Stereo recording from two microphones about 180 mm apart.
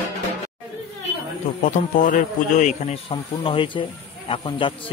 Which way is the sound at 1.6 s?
45° left (ahead or behind).